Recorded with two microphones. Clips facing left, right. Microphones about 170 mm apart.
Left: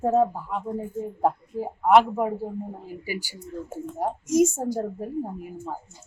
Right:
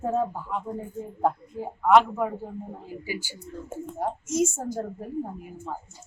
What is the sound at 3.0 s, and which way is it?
Speech, 10° left (ahead or behind).